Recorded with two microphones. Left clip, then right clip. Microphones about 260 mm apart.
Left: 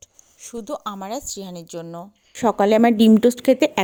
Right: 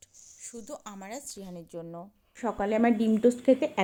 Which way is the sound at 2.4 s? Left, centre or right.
Left.